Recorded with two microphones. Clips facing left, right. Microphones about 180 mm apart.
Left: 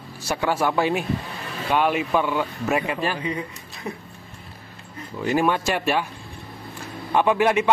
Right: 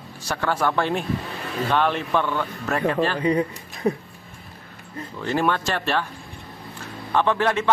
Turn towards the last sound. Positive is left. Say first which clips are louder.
# left 2 dB
turn(degrees=10)  # may be behind; listen again after turning